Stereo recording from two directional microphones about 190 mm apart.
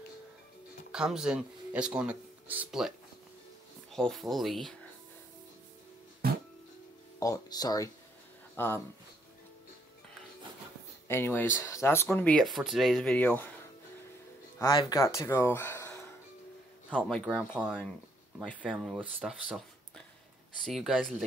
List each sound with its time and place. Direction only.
0.9 s speech: 5° right (ahead or behind)
3.9 s speech: centre (ahead or behind)
7.2 s speech: 20° left (ahead or behind)
11.1 s speech: 15° left (ahead or behind)
14.7 s speech: 20° left (ahead or behind)
16.9 s speech: 5° left (ahead or behind)
18.6 s speech: 5° right (ahead or behind)
20.6 s speech: centre (ahead or behind)